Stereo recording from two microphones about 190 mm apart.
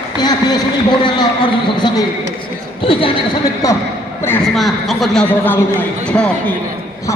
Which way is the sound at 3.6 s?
15° left (ahead or behind).